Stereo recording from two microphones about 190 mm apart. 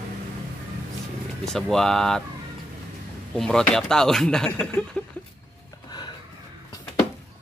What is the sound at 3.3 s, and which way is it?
Speech, 5° left (ahead or behind).